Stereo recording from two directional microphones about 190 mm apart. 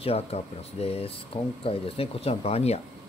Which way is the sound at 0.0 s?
30° left (ahead or behind).